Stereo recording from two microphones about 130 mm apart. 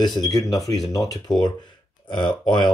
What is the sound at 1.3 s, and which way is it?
Speech, centre (ahead or behind).